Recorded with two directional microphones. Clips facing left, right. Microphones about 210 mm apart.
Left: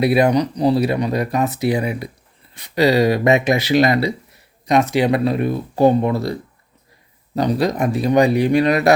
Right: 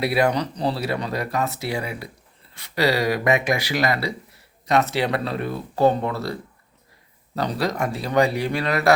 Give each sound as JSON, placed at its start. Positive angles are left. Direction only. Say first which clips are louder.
{"t": 0.0, "sound": "speech", "louder": "left 6 dB", "side_deg": 20}
{"t": 7.3, "sound": "speech", "louder": "left 6 dB", "side_deg": 15}